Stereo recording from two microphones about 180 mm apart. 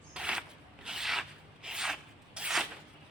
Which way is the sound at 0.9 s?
5° right (ahead or behind).